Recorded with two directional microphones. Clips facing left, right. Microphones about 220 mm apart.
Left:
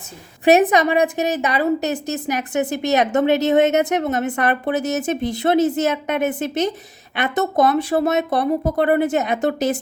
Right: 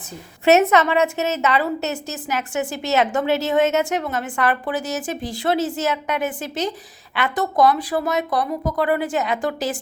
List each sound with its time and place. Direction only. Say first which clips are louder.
0.7 s a woman's voice: left 1 dB; 15° left (ahead or behind)